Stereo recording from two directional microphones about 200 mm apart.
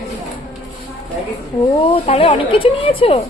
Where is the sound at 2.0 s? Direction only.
35° left (ahead or behind).